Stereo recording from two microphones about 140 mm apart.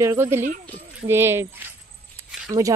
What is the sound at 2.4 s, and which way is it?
Speech, 25° right (ahead or behind).